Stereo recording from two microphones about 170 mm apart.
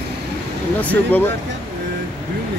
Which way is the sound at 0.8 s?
10° left (ahead or behind).